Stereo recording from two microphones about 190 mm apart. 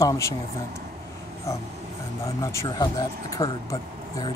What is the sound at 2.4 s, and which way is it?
Speech, 15° left (ahead or behind).